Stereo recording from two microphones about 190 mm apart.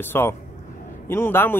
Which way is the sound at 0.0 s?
10° left (ahead or behind).